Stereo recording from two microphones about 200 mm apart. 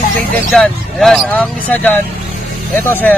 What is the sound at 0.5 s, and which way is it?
Speech, centre (ahead or behind).